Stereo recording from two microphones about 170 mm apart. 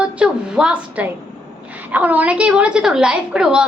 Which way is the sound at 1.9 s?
10° right (ahead or behind).